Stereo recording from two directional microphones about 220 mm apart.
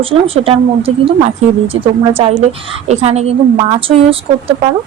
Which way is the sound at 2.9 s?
30° right (ahead or behind).